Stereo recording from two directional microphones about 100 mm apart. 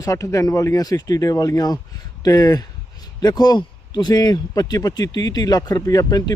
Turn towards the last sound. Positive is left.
turn(degrees=40)  # may be behind; listen again after turning